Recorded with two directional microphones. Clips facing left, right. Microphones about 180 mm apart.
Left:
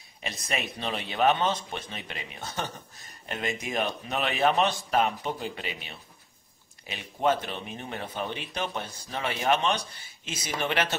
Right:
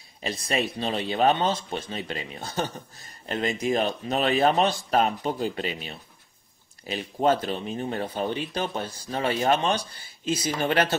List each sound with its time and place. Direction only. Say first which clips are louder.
0.2 s speech: right 6 dB; 35° right (ahead or behind)